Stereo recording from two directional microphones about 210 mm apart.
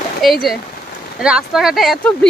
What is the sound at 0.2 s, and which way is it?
Speech, centre (ahead or behind).